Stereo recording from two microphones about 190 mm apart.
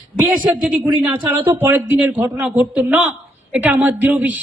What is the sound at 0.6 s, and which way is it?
A woman's voice, 5° right (ahead or behind).